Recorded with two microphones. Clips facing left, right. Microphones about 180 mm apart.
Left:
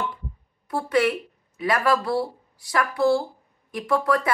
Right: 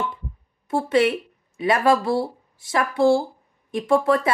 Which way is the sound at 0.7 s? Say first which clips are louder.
Right 3 dB; 25° right (ahead or behind).